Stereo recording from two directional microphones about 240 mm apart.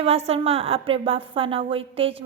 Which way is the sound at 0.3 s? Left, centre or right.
Right.